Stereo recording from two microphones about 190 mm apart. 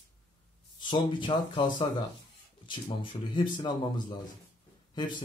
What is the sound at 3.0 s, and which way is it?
Speech, 25° left (ahead or behind).